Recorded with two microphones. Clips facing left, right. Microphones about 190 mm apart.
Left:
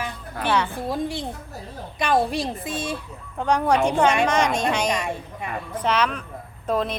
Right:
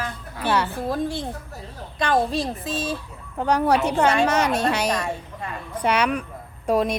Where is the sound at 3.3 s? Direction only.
10° right (ahead or behind).